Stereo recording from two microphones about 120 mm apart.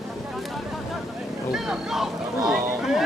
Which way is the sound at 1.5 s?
5° right (ahead or behind).